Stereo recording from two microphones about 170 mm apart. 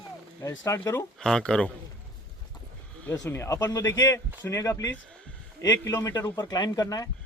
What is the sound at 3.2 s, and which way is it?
Speech, 15° left (ahead or behind).